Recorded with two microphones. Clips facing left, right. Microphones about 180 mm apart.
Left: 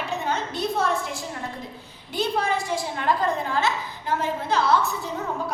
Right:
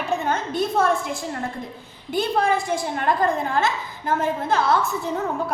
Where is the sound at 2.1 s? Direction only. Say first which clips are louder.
Right 4 dB; 50° right (ahead or behind).